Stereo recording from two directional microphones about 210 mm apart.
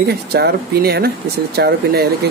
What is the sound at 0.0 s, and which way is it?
Speech, 50° right (ahead or behind).